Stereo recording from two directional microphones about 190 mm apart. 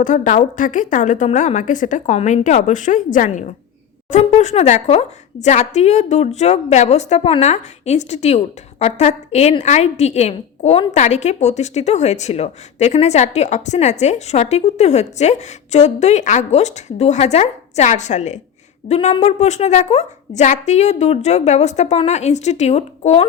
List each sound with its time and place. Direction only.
0.0 s a woman's voice: 40° left (ahead or behind)